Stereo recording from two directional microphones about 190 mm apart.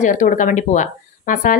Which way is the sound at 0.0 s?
45° left (ahead or behind).